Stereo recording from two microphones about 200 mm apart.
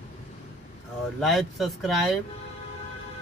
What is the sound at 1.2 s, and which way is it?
Speech, centre (ahead or behind).